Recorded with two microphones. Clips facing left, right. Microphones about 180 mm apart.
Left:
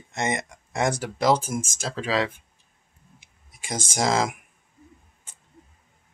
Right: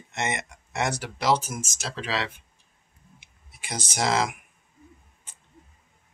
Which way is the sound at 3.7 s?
50° left (ahead or behind).